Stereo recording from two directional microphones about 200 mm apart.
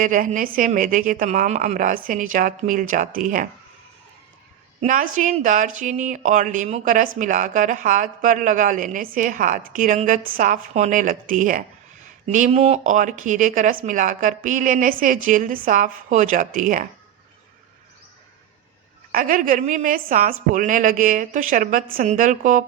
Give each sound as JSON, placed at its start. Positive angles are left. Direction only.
{"t": 0.0, "sound": "a woman's voice", "side_deg": -40}
{"t": 4.8, "sound": "speech", "side_deg": -40}
{"t": 19.1, "sound": "speech", "side_deg": -45}